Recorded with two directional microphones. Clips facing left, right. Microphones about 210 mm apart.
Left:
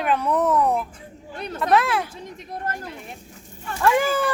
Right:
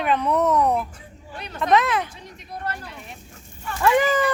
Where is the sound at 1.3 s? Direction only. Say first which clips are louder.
Left 5 dB; 45° left (ahead or behind).